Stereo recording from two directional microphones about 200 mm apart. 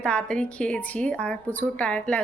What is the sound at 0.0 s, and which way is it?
A woman's voice, 5° left (ahead or behind).